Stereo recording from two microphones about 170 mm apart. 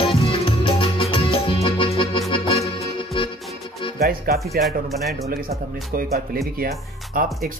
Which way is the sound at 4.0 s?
65° right (ahead or behind).